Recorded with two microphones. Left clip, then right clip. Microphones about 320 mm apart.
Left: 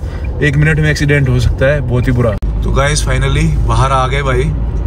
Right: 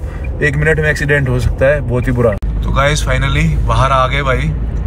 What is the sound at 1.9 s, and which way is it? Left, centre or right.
Speech, centre.